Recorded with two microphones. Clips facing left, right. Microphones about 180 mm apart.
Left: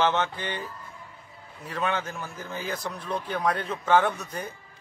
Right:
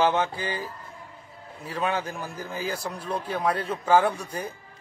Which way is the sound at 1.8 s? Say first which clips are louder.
Right 1 dB; 10° right (ahead or behind).